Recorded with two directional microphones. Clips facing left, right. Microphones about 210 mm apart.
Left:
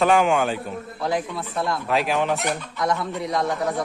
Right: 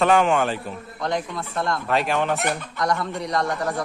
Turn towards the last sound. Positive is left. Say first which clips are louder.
# left 1 dB
turn(degrees=0)  # may be behind; listen again after turning